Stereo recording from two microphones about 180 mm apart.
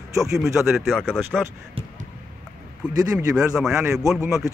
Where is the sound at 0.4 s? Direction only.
Centre (ahead or behind).